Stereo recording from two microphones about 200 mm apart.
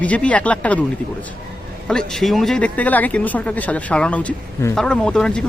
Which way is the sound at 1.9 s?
5° left (ahead or behind).